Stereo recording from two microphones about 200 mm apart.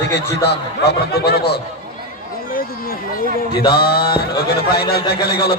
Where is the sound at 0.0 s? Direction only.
60° left (ahead or behind).